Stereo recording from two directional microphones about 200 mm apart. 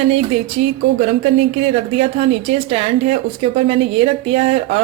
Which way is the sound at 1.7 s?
30° right (ahead or behind).